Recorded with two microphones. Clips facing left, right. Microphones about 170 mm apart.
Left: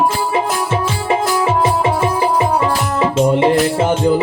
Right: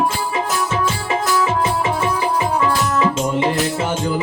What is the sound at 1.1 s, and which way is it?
Music, 30° left (ahead or behind).